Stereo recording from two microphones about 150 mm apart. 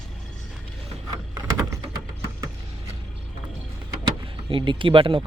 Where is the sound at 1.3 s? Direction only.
20° right (ahead or behind).